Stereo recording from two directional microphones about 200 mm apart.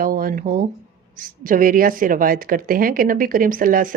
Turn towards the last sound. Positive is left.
turn(degrees=-45)  # may be behind; listen again after turning